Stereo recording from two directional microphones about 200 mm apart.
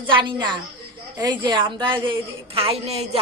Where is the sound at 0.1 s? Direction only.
25° right (ahead or behind).